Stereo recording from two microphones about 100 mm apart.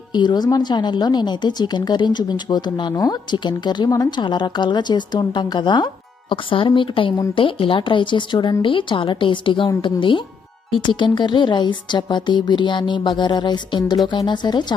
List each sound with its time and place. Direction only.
0.1 s a woman's voice: 50° left (ahead or behind)